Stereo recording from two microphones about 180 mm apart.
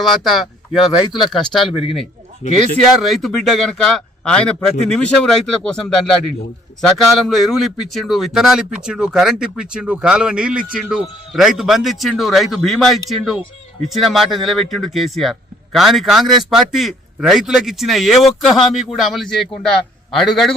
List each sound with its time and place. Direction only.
0.0 s a man's voice: centre (ahead or behind)
1.6 s speech: 30° left (ahead or behind)
3.0 s a man's voice: centre (ahead or behind)